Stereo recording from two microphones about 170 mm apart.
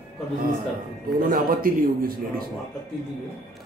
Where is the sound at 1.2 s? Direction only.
55° right (ahead or behind).